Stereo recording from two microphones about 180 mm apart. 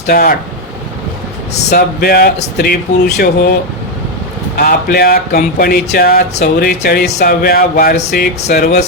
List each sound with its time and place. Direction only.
0.1 s speech: 55° left (ahead or behind)
1.7 s speech: 55° left (ahead or behind)
4.5 s speech: 60° left (ahead or behind)